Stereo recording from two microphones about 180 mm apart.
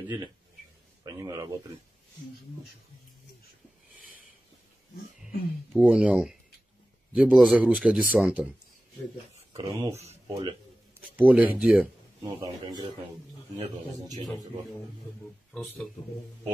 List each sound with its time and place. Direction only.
1.0 s speech: 20° right (ahead or behind)
5.2 s speech: 5° right (ahead or behind)
9.3 s a sound: 30° right (ahead or behind)
10.3 s speech: 30° right (ahead or behind)
11.0 s speech: 10° right (ahead or behind)
12.4 s speech: 20° right (ahead or behind)
15.5 s speech: 5° left (ahead or behind)